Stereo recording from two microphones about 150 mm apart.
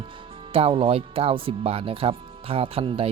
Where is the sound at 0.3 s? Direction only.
35° right (ahead or behind).